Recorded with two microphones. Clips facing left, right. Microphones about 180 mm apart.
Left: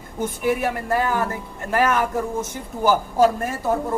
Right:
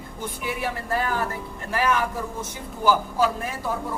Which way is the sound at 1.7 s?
50° left (ahead or behind).